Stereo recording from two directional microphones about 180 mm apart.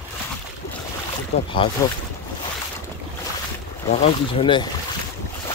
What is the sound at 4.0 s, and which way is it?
Speech, 25° left (ahead or behind).